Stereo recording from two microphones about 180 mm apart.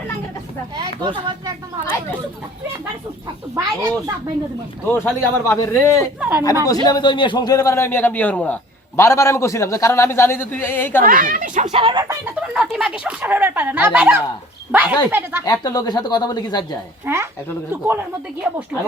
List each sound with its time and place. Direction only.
0.8 s speech: 25° right (ahead or behind)
3.5 s speech: 20° right (ahead or behind)
4.9 s a man's voice: 15° left (ahead or behind)
6.1 s speech: 5° right (ahead or behind)
6.8 s a man's voice: 25° left (ahead or behind)
11.0 s speech: 50° right (ahead or behind)
11.8 s speech: 25° right (ahead or behind)
12.2 s speech: 5° right (ahead or behind)
15.4 s speech: 20° left (ahead or behind)
17.1 s speech: 15° right (ahead or behind)